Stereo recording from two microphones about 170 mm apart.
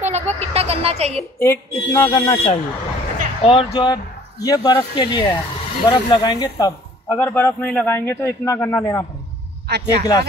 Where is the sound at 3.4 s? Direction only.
30° left (ahead or behind).